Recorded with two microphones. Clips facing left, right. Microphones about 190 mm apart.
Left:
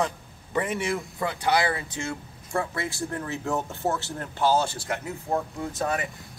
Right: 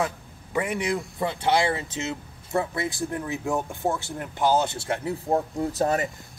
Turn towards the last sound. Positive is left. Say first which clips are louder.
# right 4 dB
turn(degrees=-40)  # may be behind; listen again after turning